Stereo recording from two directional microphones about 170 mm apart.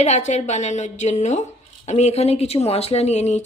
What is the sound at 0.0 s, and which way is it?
A woman's voice, 40° left (ahead or behind).